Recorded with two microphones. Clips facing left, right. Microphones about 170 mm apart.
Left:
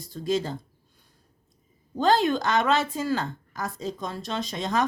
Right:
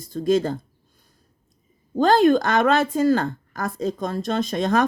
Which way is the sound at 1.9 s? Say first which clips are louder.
Right 6 dB; 50° right (ahead or behind).